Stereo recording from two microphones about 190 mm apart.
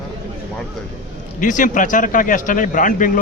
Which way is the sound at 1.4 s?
45° left (ahead or behind).